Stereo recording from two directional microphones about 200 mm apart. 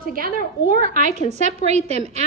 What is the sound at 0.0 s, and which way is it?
A woman's voice, 45° right (ahead or behind).